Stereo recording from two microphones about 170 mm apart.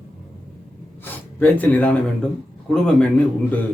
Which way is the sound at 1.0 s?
10° left (ahead or behind).